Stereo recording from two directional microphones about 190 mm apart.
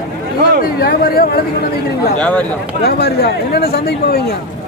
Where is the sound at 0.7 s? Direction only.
55° left (ahead or behind).